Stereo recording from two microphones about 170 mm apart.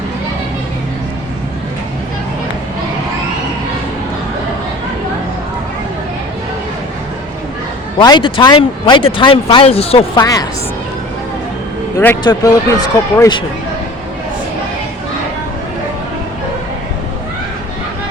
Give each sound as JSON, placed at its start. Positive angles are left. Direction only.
{"t": 7.9, "sound": "speech", "side_deg": 25}
{"t": 10.2, "sound": "speech", "side_deg": 20}
{"t": 12.2, "sound": "speech", "side_deg": 25}